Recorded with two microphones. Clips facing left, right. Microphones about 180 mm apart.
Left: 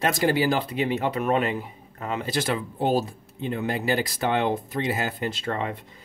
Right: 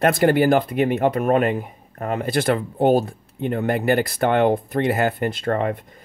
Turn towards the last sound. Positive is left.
turn(degrees=-55)  # may be behind; listen again after turning